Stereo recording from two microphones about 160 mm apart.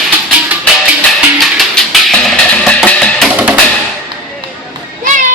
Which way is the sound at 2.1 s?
5° left (ahead or behind).